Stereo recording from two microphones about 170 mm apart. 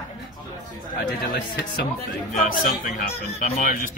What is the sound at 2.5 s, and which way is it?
Speech, 55° left (ahead or behind).